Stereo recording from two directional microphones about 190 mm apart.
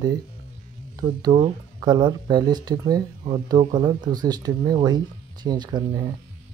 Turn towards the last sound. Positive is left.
turn(degrees=-20)  # may be behind; listen again after turning